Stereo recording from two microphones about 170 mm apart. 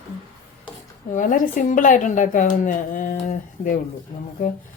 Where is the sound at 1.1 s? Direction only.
50° left (ahead or behind).